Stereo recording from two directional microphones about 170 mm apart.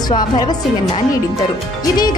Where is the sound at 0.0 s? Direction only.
25° left (ahead or behind).